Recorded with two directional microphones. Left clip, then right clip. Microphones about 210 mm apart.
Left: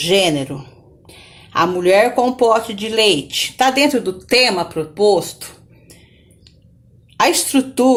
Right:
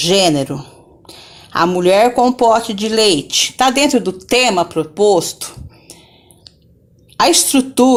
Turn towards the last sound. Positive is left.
turn(degrees=-40)  # may be behind; listen again after turning